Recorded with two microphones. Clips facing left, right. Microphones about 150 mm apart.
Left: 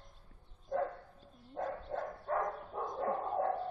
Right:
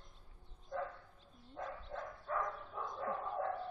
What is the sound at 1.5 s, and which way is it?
Dog, 45° left (ahead or behind).